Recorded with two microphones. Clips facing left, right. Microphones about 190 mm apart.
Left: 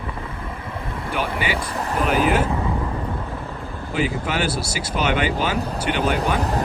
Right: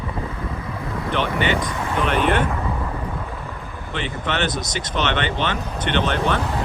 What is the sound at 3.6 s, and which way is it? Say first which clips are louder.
Vehicle: left 3 dB; 15° right (ahead or behind).